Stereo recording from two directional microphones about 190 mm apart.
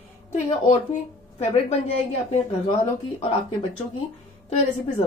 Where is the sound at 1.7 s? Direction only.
35° left (ahead or behind).